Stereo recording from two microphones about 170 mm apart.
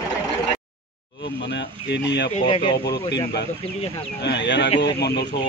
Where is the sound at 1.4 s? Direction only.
90° left.